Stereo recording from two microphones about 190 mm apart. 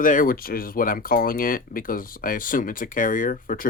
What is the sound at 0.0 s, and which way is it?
Speech, 45° left (ahead or behind).